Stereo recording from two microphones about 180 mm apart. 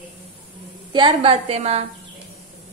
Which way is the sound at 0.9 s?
30° right (ahead or behind).